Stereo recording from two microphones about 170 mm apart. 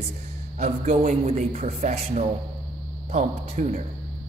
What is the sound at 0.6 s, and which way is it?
Speech, 40° right (ahead or behind).